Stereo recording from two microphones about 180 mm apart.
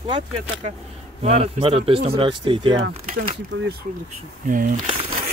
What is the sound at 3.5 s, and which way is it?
Speech, 90° right.